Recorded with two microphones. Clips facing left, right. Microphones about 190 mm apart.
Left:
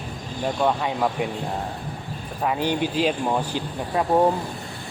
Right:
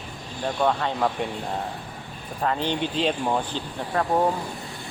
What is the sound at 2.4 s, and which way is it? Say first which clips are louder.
Speech: left 2 dB; 10° left (ahead or behind).